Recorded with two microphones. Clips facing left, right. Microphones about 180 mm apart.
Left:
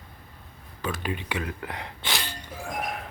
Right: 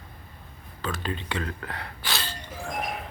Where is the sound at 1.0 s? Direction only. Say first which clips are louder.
Even; 15° left (ahead or behind).